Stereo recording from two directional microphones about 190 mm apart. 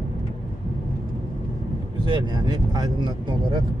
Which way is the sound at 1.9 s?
25° right (ahead or behind).